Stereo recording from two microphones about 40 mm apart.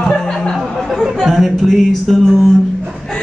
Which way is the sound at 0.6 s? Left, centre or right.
Centre.